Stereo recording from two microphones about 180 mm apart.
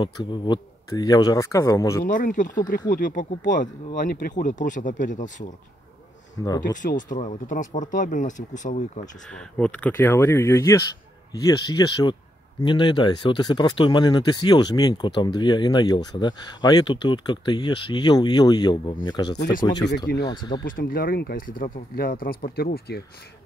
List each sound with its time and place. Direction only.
0.0 s speech: 25° left (ahead or behind)
2.0 s speech: 45° left (ahead or behind)
6.4 s speech: 20° left (ahead or behind)
6.8 s speech: 45° left (ahead or behind)
9.3 s speech: 5° left (ahead or behind); by 20.6 s 25° left (ahead or behind)
20.6 s speech: 50° left (ahead or behind)